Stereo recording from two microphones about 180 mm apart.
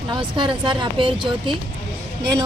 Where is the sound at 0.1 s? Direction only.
25° right (ahead or behind).